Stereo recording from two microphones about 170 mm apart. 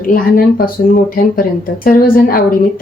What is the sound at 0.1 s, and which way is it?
Speech, 60° left (ahead or behind).